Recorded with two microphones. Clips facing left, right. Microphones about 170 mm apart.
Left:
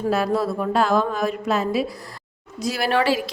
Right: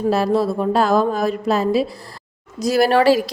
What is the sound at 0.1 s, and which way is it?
A woman's voice, 30° right (ahead or behind).